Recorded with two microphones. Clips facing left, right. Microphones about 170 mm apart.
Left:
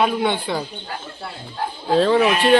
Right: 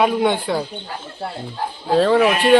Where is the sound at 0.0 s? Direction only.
10° right (ahead or behind).